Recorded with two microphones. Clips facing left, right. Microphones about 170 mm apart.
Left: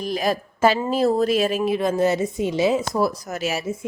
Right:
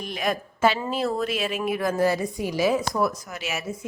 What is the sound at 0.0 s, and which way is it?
A woman's voice, 35° left (ahead or behind).